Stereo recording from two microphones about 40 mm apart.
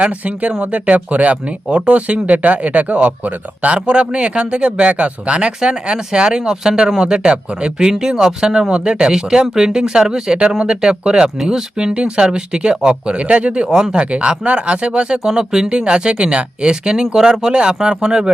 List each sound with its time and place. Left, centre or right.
0.0 s speech: right